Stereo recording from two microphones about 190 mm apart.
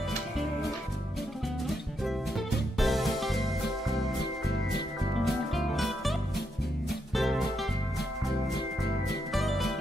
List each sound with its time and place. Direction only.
2.8 s music: centre (ahead or behind)
4.2 s music: 60° left (ahead or behind)
5.2 s music: centre (ahead or behind)
7.2 s music: centre (ahead or behind)
9.3 s music: centre (ahead or behind)